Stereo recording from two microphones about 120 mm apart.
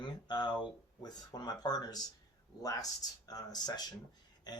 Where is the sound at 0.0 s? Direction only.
40° left (ahead or behind).